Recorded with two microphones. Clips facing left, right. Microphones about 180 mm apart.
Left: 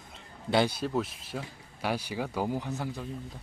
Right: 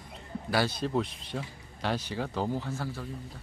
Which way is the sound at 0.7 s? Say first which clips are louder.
Right 1 dB; 5° left (ahead or behind).